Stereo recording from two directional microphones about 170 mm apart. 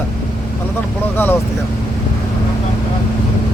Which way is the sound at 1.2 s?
10° left (ahead or behind).